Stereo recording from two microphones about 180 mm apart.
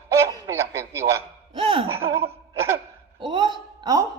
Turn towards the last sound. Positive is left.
turn(degrees=-20)  # may be behind; listen again after turning